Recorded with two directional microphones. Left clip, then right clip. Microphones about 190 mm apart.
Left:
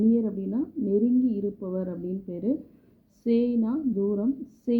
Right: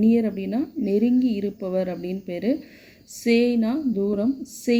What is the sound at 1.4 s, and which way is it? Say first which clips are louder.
Speech: right 6 dB; 35° right (ahead or behind).